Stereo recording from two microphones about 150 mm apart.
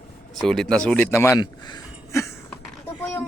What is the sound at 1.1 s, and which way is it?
A man's voice, 20° left (ahead or behind).